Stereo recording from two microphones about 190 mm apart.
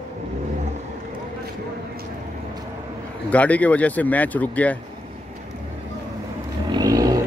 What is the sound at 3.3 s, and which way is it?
Speech, 5° left (ahead or behind).